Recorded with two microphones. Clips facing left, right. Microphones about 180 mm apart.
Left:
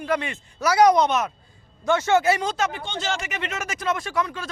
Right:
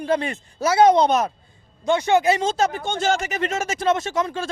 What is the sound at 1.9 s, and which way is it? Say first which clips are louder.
Speech: right 2 dB; 15° right (ahead or behind).